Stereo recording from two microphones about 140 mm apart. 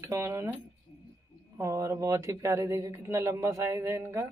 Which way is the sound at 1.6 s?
20° right (ahead or behind).